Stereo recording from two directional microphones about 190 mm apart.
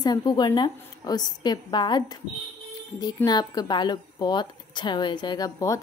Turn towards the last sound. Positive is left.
turn(degrees=15)  # may be behind; listen again after turning